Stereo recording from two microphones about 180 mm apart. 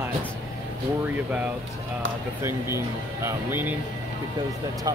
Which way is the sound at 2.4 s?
15° right (ahead or behind).